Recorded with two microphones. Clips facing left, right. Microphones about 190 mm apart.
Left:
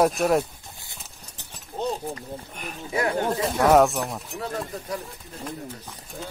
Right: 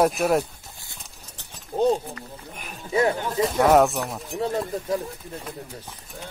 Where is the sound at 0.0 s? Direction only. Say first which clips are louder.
Even; centre (ahead or behind).